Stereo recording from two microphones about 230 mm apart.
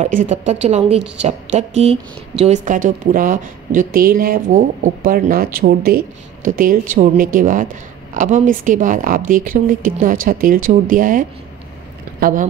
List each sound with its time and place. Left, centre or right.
0.0 s a woman's voice: right